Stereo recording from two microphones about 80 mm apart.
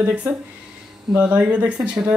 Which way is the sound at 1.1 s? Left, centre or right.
Centre.